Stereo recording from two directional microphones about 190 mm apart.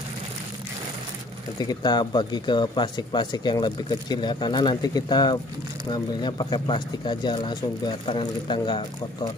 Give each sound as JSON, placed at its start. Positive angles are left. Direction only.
{"t": 1.6, "sound": "speech", "side_deg": 20}